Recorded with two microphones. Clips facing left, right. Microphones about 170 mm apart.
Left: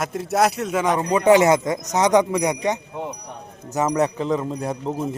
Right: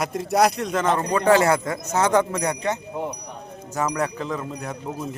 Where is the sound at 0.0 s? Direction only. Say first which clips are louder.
Even; centre (ahead or behind).